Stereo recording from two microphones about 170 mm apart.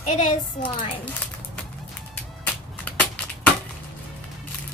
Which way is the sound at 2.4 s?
10° left (ahead or behind).